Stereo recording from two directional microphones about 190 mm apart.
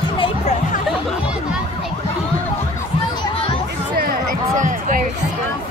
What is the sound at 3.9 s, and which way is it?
Music, 50° right (ahead or behind).